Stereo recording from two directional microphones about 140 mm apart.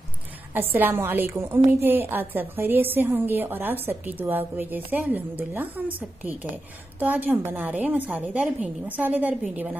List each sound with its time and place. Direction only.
0.6 s a woman's voice: 15° right (ahead or behind)